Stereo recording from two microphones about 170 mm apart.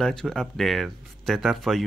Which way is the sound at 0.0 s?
5° left (ahead or behind).